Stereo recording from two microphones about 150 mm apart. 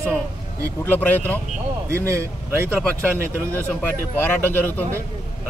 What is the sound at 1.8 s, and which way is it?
Speech, 20° right (ahead or behind).